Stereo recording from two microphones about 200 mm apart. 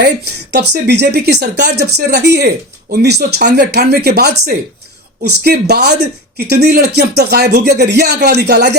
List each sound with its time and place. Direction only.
0.5 s speech: 55° right (ahead or behind)